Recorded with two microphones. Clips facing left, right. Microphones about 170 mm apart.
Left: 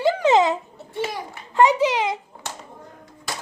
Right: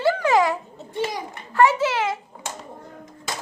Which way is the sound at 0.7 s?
20° right (ahead or behind).